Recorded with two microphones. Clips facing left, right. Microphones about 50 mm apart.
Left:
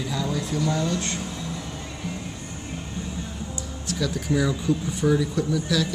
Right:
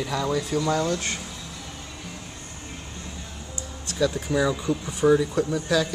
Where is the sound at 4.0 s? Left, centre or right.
Right.